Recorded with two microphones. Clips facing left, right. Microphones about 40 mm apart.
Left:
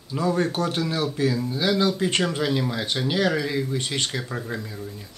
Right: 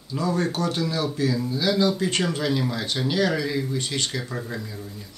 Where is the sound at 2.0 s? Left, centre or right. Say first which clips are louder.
Left 1 dB; left.